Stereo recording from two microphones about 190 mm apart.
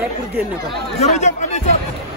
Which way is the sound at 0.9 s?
35° left (ahead or behind).